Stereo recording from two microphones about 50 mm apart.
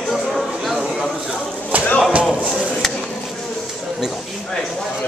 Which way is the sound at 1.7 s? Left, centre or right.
Right.